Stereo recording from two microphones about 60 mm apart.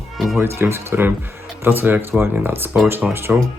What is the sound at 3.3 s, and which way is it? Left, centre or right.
Speech, centre.